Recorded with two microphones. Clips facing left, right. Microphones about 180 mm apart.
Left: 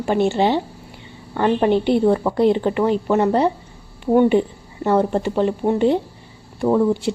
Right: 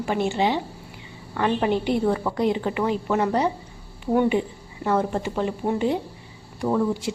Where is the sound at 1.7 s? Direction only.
30° left (ahead or behind).